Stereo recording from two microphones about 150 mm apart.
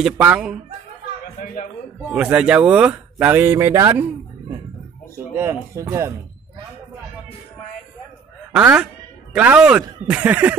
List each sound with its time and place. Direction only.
0.0 s speech: 5° right (ahead or behind)
1.4 s a man's voice: 65° left (ahead or behind)
2.0 s speech: 10° right (ahead or behind)
5.3 s speech: 15° right (ahead or behind)
8.5 s speech: 5° right (ahead or behind)